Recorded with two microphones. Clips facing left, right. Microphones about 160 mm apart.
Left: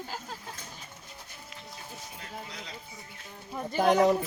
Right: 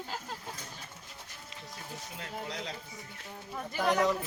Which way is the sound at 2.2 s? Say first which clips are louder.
Right 5 dB; 80° right.